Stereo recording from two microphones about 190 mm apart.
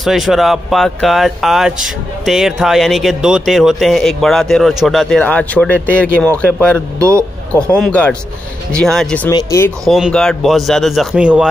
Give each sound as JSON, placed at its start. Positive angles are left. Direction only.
{"t": 0.0, "sound": "speech", "side_deg": 0}
{"t": 7.0, "sound": "speech", "side_deg": -15}
{"t": 7.9, "sound": "speech", "side_deg": 5}
{"t": 9.3, "sound": "speech", "side_deg": 20}
{"t": 9.8, "sound": "speech", "side_deg": 0}